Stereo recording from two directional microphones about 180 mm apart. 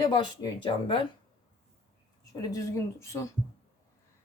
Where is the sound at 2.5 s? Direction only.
15° left (ahead or behind).